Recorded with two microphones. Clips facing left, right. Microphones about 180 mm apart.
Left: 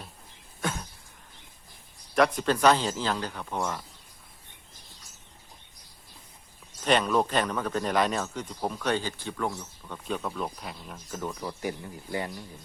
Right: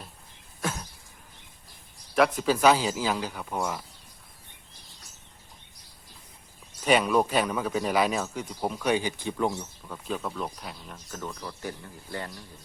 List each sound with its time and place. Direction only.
0.6 s throat clearing: centre (ahead or behind)
2.1 s speech: 5° right (ahead or behind)
6.8 s speech: 10° right (ahead or behind)
9.8 s speech: centre (ahead or behind)
11.3 s speech: 15° left (ahead or behind)